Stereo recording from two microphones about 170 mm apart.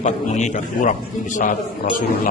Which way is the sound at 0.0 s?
45° left (ahead or behind).